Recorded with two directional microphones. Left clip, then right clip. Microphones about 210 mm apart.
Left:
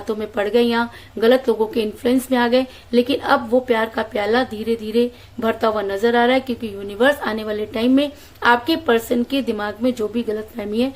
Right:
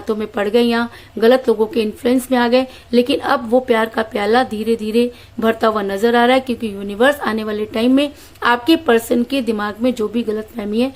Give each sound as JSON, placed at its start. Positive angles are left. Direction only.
{"t": 0.1, "sound": "a woman's voice", "side_deg": -25}